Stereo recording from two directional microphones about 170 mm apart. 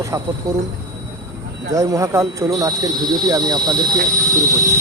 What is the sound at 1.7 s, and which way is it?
Speech, 20° right (ahead or behind).